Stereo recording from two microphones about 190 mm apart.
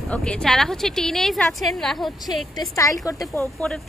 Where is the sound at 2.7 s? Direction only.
15° left (ahead or behind).